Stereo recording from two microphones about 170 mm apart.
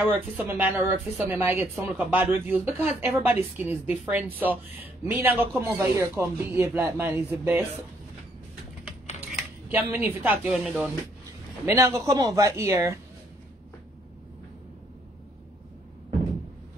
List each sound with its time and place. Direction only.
0.0 s a woman's voice: 10° right (ahead or behind)
9.3 s speech: 10° right (ahead or behind)
11.6 s a woman's voice: 15° right (ahead or behind)